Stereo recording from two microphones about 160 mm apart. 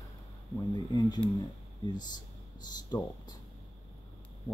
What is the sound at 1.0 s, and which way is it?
Speech, 25° left (ahead or behind).